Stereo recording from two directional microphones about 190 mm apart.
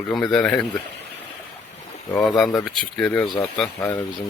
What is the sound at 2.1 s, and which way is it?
Speech, centre (ahead or behind).